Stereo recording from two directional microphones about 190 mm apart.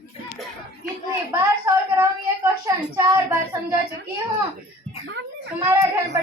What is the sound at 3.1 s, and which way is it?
Speech, 15° right (ahead or behind).